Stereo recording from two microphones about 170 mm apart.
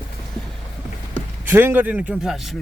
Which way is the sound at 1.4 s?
10° right (ahead or behind).